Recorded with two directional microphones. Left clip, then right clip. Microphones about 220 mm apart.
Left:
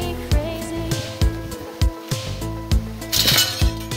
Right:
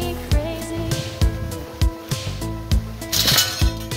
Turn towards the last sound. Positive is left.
turn(degrees=5)  # may be behind; listen again after turning